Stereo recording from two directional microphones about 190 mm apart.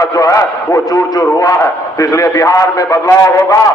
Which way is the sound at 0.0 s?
20° left (ahead or behind).